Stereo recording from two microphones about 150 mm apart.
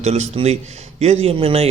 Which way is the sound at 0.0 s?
45° right (ahead or behind).